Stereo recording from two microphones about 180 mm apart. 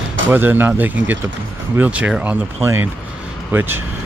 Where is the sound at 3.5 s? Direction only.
10° right (ahead or behind).